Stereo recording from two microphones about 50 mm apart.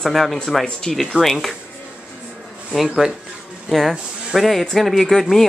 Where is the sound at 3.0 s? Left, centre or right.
Centre.